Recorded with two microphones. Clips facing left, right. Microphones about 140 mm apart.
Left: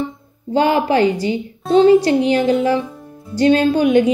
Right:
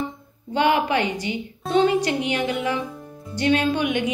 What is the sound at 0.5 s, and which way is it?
Speech, 35° left (ahead or behind).